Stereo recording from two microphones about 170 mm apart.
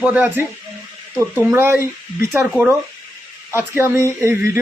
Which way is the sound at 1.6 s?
15° right (ahead or behind).